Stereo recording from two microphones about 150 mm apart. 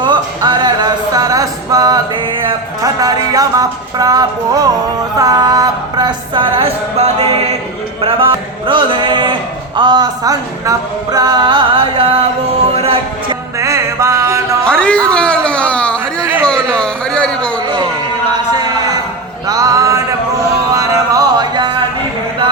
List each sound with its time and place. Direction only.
0.0 s music: 30° right (ahead or behind)
2.5 s speech: 25° right (ahead or behind)
12.7 s music: 40° right (ahead or behind)
13.6 s music: 20° right (ahead or behind)
14.6 s music: 5° left (ahead or behind)
16.4 s a sound: 5° left (ahead or behind)
19.5 s a sound: 25° right (ahead or behind)
20.7 s music: 20° right (ahead or behind)